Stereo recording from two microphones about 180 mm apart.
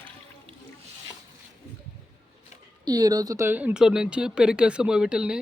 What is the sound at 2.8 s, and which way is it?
Speech, 20° right (ahead or behind).